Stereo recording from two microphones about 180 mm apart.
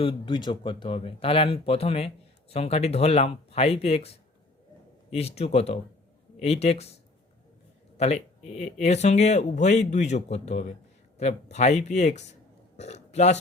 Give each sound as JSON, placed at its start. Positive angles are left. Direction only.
{"t": 0.0, "sound": "speech", "side_deg": 30}
{"t": 7.9, "sound": "speech", "side_deg": 35}